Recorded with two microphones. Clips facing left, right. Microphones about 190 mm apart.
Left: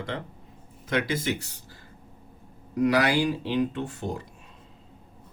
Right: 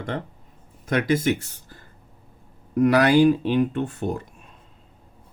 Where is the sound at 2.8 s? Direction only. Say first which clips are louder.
Right 6 dB; 55° right (ahead or behind).